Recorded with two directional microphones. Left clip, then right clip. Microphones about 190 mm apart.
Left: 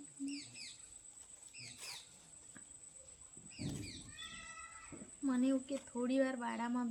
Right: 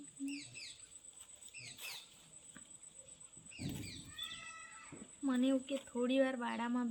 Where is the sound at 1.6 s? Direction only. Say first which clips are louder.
Right 1 dB; 45° left (ahead or behind).